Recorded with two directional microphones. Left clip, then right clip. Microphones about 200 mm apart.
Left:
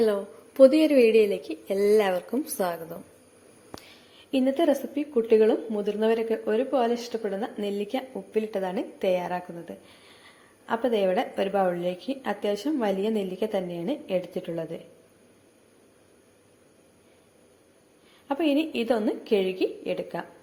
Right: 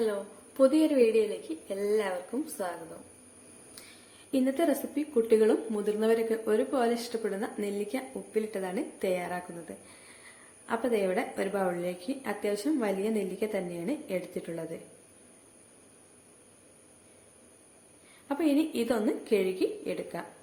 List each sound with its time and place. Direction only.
0.0 s a woman's voice: 20° left (ahead or behind)
3.8 s a woman's voice: 15° left (ahead or behind)
18.3 s a woman's voice: 10° left (ahead or behind)